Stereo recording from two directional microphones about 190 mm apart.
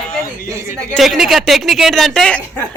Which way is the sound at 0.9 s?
Centre (ahead or behind).